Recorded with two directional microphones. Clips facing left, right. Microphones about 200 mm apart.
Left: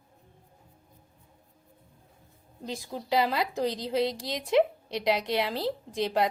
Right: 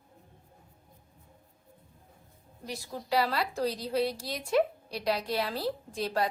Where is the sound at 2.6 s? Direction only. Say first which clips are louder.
Left 3 dB; 20° left (ahead or behind).